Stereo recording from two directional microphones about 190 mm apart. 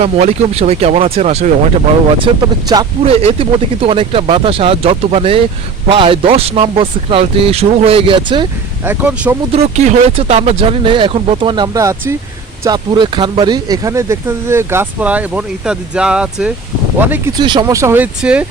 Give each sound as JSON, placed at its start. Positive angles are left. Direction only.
{"t": 0.0, "sound": "speech", "side_deg": -35}
{"t": 2.1, "sound": "speech", "side_deg": -25}
{"t": 8.8, "sound": "speech", "side_deg": -10}
{"t": 9.5, "sound": "speech", "side_deg": -35}
{"t": 17.3, "sound": "speech", "side_deg": -25}